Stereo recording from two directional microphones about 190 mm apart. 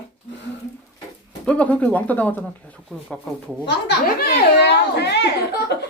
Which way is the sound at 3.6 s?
60° left (ahead or behind).